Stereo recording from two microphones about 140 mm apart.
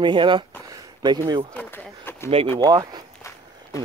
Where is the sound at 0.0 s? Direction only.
35° right (ahead or behind).